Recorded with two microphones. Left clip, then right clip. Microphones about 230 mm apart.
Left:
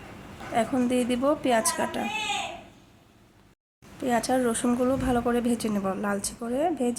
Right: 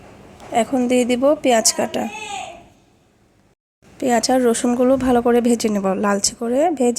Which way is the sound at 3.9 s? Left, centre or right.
Right.